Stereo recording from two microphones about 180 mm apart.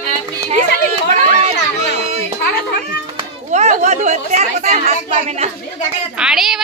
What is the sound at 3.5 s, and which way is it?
Speech, 40° right (ahead or behind).